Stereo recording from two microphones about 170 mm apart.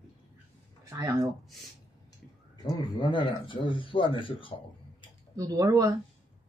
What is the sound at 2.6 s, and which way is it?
Speech, 25° left (ahead or behind).